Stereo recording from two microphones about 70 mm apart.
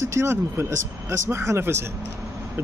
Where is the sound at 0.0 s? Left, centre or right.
Right.